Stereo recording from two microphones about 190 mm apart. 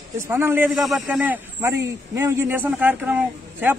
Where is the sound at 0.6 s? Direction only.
Centre (ahead or behind).